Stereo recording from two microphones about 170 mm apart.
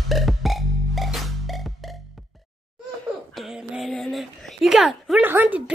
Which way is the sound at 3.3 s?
Centre (ahead or behind).